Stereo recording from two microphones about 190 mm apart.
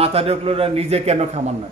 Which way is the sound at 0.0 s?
30° right (ahead or behind).